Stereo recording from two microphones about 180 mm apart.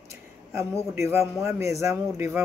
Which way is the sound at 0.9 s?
15° right (ahead or behind).